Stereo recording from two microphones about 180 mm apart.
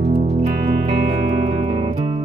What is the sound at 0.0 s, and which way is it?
Music, 35° right (ahead or behind).